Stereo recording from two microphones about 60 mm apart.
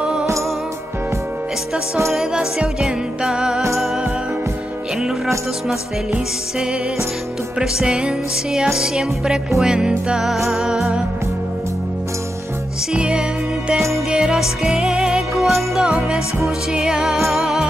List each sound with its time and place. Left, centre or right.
0.0 s music: centre
2.1 s music: centre
7.5 s music: centre
12.9 s music: centre